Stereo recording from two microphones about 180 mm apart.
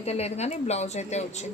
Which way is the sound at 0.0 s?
35° left (ahead or behind).